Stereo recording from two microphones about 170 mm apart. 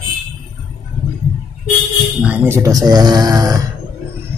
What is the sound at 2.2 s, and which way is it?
Speech, 10° right (ahead or behind).